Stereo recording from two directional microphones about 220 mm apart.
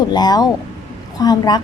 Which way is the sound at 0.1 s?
20° left (ahead or behind).